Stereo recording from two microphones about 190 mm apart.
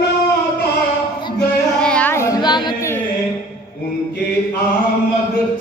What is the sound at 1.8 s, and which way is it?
Female singing, 5° left (ahead or behind).